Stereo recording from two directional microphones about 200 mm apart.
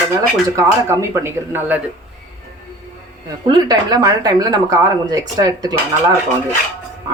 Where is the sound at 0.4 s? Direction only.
15° right (ahead or behind).